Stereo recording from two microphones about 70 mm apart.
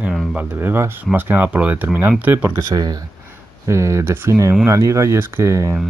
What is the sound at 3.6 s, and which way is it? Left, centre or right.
Speech, right.